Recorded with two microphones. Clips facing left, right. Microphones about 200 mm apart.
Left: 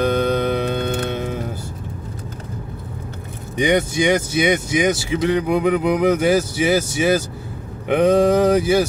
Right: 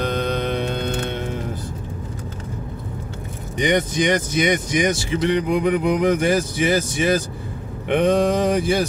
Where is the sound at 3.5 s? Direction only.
10° left (ahead or behind).